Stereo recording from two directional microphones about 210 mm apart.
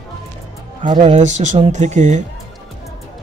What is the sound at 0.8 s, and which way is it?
Speech, 30° right (ahead or behind).